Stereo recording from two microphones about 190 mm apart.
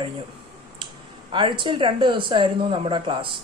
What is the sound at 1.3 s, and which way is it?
Speech, 25° right (ahead or behind).